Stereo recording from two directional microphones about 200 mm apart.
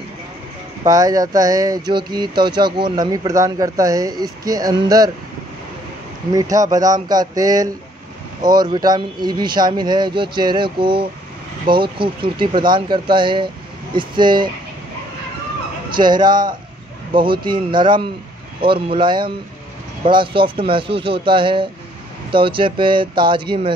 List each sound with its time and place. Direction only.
0.8 s speech: 15° right (ahead or behind)
6.3 s speech: 15° right (ahead or behind)
16.0 s speech: 20° right (ahead or behind)